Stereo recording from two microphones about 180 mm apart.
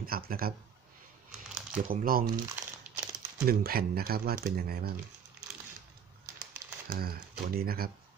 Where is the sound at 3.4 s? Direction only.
55° right (ahead or behind).